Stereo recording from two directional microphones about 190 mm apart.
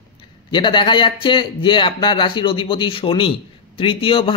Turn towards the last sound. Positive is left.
turn(degrees=30)  # may be behind; listen again after turning